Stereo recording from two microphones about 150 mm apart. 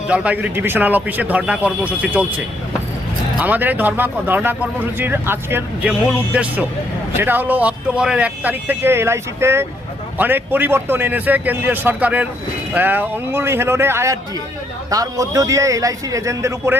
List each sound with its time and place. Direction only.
0.1 s a man's voice: 10° right (ahead or behind)